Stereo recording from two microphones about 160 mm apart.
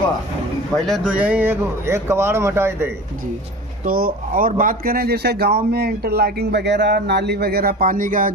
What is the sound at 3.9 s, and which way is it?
Speech, 65° right (ahead or behind).